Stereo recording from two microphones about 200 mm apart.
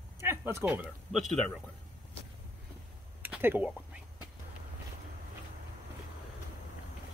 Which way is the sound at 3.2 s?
10° right (ahead or behind).